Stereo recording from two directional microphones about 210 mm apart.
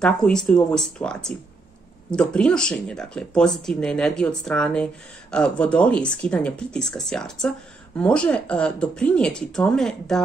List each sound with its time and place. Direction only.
0.0 s speech: 5° left (ahead or behind)